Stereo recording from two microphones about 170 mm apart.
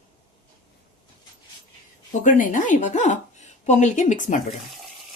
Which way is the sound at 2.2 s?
50° left (ahead or behind).